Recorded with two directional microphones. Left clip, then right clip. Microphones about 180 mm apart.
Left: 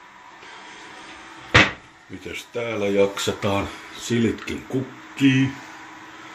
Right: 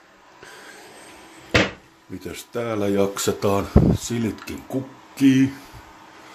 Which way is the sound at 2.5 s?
40° right (ahead or behind).